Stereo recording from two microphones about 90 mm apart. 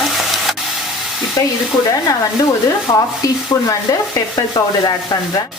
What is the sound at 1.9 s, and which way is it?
A woman's voice, 40° left (ahead or behind).